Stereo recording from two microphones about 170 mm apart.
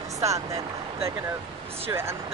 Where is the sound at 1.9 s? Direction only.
15° right (ahead or behind).